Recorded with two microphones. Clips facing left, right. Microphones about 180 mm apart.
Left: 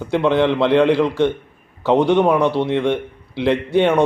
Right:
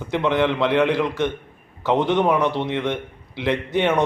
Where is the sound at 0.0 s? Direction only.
10° left (ahead or behind).